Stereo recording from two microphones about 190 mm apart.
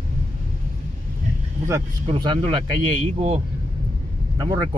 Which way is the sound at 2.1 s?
25° right (ahead or behind).